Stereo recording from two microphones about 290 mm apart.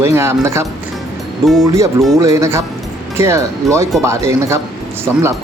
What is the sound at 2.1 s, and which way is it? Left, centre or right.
Speech, centre.